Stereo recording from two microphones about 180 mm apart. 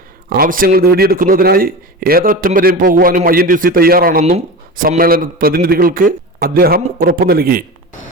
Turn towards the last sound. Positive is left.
turn(degrees=-55)  # may be behind; listen again after turning